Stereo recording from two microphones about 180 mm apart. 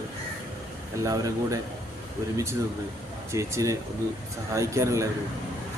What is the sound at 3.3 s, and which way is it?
Speech, 15° right (ahead or behind).